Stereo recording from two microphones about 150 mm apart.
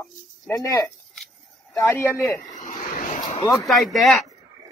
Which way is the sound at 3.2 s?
25° left (ahead or behind).